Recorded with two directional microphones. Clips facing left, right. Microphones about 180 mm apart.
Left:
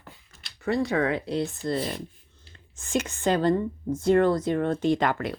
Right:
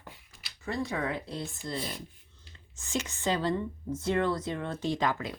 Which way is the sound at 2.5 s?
55° left (ahead or behind).